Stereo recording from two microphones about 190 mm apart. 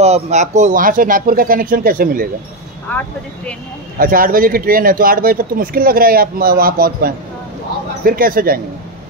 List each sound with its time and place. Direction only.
0.0 s speech: 35° right (ahead or behind)
2.9 s speech: 10° left (ahead or behind)
4.0 s speech: 45° right (ahead or behind)